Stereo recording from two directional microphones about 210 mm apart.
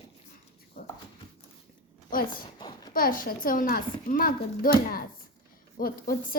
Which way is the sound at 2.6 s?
20° left (ahead or behind).